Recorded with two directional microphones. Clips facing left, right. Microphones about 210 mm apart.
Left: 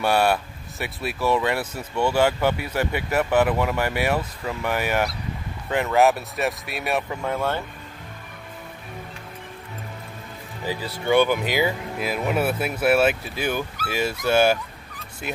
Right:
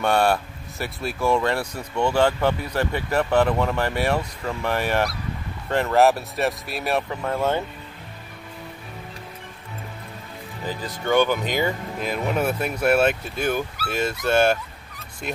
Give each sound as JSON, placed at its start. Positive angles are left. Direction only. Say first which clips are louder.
{"t": 0.0, "sound": "speech", "louder": "even", "side_deg": 5}
{"t": 7.3, "sound": "speech", "louder": "right 4 dB", "side_deg": -15}
{"t": 10.7, "sound": "speech", "louder": "left 1 dB", "side_deg": 10}